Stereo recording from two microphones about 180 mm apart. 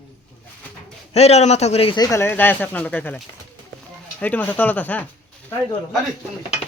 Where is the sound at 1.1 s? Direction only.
35° left (ahead or behind).